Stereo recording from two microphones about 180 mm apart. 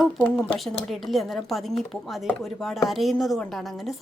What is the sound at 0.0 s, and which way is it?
A woman's voice, 5° left (ahead or behind).